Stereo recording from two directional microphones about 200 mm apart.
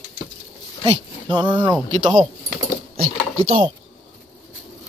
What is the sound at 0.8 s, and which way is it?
Speech, 20° right (ahead or behind).